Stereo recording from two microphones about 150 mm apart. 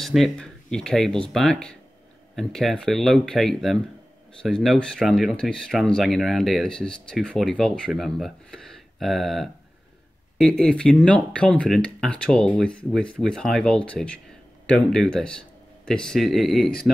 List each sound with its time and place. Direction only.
0.0 s speech: centre (ahead or behind)